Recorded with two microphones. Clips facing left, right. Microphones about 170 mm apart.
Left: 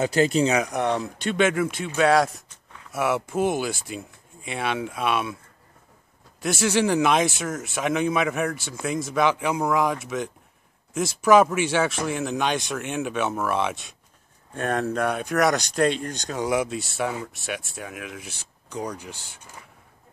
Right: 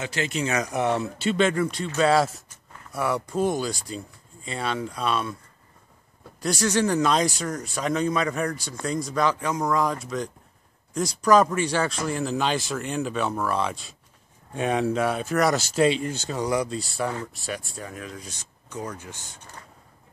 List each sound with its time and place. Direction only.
0.0 s speech: 40° left (ahead or behind)
0.7 s speech: 5° right (ahead or behind)
6.6 s speech: 10° left (ahead or behind)
14.5 s speech: 10° right (ahead or behind); by 19.0 s 15° left (ahead or behind)